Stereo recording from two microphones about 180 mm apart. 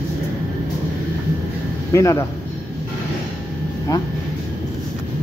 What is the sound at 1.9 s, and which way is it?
Speech, 15° left (ahead or behind).